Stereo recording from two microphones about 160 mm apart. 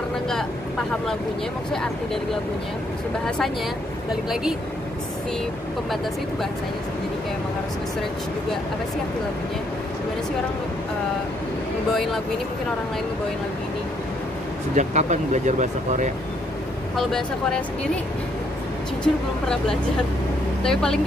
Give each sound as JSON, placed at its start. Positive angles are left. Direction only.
{"t": 3.3, "sound": "speech", "side_deg": 5}
{"t": 11.9, "sound": "speech", "side_deg": 0}
{"t": 14.8, "sound": "speech", "side_deg": -50}
{"t": 16.9, "sound": "speech", "side_deg": 0}
{"t": 19.1, "sound": "speech", "side_deg": 0}